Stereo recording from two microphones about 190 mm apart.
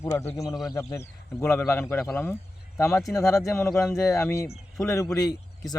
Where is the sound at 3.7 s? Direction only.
Centre (ahead or behind).